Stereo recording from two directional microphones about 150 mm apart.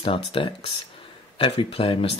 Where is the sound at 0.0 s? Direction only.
40° left (ahead or behind).